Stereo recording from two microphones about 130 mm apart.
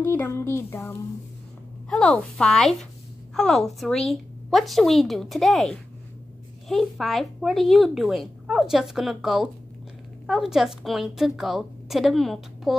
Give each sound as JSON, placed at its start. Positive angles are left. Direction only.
{"t": 0.0, "sound": "speech", "side_deg": 20}
{"t": 1.9, "sound": "speech", "side_deg": 10}